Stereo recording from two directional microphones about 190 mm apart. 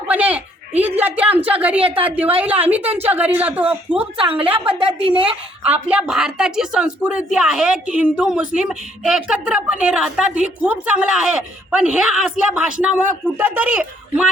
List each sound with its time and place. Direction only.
0.1 s a woman's voice: 10° right (ahead or behind)
2.8 s a woman's voice: 30° right (ahead or behind)
3.1 s speech: 10° right (ahead or behind)
4.2 s a woman's voice: 30° right (ahead or behind)
4.4 s speech: 10° right (ahead or behind)
4.8 s a woman's voice: 30° right (ahead or behind)
5.6 s a woman's voice: 5° right (ahead or behind)